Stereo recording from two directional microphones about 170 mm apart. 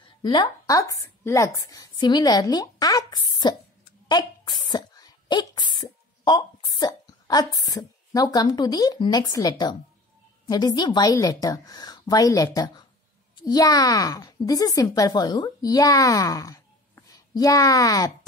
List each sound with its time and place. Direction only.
0.2 s a woman's voice: 25° left (ahead or behind)